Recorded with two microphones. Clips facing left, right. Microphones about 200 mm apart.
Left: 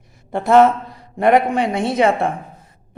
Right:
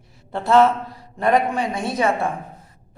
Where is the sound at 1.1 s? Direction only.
65° left (ahead or behind).